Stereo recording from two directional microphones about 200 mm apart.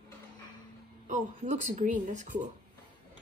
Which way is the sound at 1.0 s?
35° right (ahead or behind).